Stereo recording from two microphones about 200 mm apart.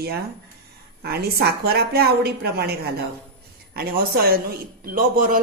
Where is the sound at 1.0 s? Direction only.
50° right (ahead or behind).